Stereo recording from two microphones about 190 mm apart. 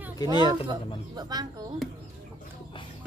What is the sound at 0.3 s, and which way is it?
Speech, 25° right (ahead or behind).